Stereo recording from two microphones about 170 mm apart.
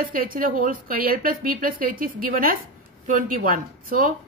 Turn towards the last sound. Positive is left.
turn(degrees=-55)  # may be behind; listen again after turning